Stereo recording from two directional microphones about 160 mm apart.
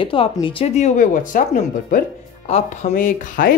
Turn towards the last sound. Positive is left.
turn(degrees=55)  # may be behind; listen again after turning